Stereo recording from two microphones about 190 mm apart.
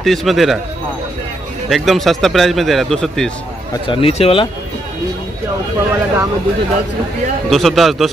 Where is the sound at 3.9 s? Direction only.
30° left (ahead or behind).